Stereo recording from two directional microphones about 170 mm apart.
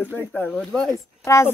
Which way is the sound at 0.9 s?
15° left (ahead or behind).